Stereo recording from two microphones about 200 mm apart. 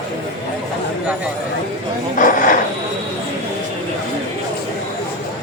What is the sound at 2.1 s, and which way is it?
Speech, 45° left (ahead or behind).